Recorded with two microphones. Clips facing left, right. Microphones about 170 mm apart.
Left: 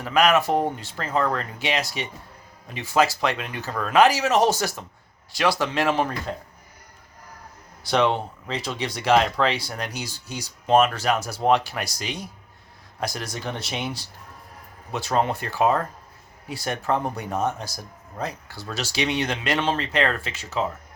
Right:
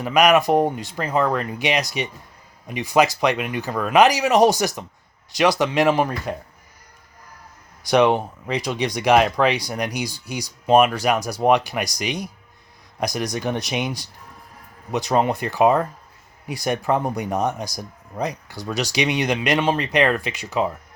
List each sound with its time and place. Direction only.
0.0 s speech: 15° right (ahead or behind)
7.9 s speech: 15° right (ahead or behind)